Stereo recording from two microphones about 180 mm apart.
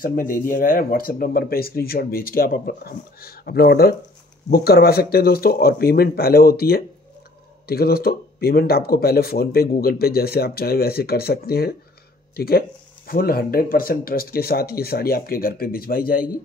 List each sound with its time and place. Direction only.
0.0 s speech: 50° left (ahead or behind)